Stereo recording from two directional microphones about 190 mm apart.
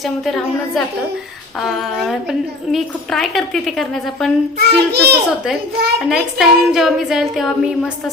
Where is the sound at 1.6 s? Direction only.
Centre (ahead or behind).